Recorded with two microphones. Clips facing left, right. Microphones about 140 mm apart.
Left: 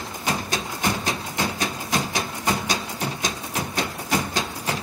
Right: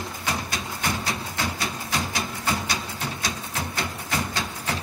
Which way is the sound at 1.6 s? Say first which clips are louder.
Left 3 dB; 15° left (ahead or behind).